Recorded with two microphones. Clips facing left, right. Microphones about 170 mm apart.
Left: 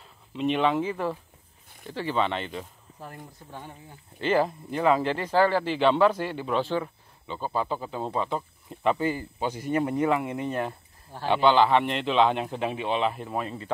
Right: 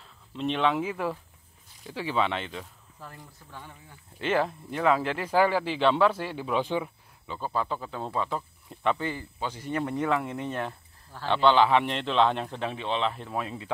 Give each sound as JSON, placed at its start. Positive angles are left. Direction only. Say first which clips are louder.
{"t": 0.4, "sound": "speech", "louder": "left 2 dB", "side_deg": 5}
{"t": 3.2, "sound": "speech", "louder": "left 4 dB", "side_deg": 20}
{"t": 4.2, "sound": "speech", "louder": "left 3 dB", "side_deg": 0}
{"t": 6.6, "sound": "speech", "louder": "left 1 dB", "side_deg": -15}
{"t": 7.2, "sound": "a man's voice", "louder": "left 2 dB", "side_deg": 0}
{"t": 11.1, "sound": "a man's voice", "louder": "left 1 dB", "side_deg": 15}